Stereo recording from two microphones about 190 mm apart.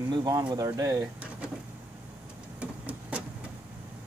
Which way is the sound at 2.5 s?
5° right (ahead or behind).